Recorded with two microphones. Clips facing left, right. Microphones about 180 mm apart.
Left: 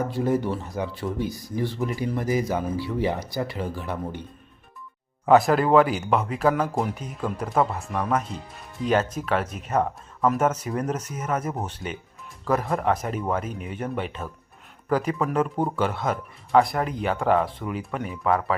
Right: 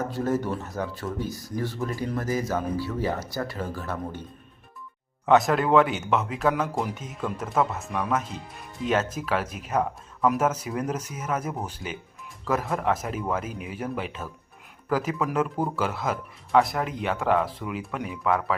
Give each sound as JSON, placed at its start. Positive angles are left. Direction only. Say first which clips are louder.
{"t": 0.1, "sound": "speech", "louder": "left 2 dB", "side_deg": 10}
{"t": 5.2, "sound": "speech", "louder": "left 2 dB", "side_deg": 0}
{"t": 15.5, "sound": "speech", "louder": "left 2 dB", "side_deg": 25}
{"t": 15.8, "sound": "speech", "louder": "left 2 dB", "side_deg": -5}